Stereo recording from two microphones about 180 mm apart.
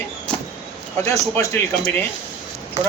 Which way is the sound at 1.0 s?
15° left (ahead or behind).